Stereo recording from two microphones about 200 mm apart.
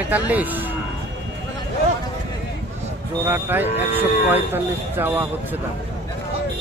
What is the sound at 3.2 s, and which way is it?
Speech, 10° right (ahead or behind).